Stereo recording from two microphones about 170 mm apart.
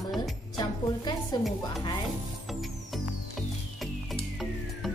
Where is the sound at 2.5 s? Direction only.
Centre (ahead or behind).